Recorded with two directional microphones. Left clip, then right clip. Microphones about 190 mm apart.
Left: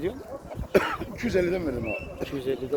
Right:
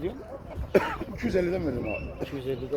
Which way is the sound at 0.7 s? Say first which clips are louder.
Left 1 dB; 25° right (ahead or behind).